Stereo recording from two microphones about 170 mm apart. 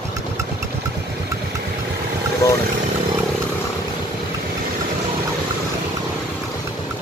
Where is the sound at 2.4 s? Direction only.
20° left (ahead or behind).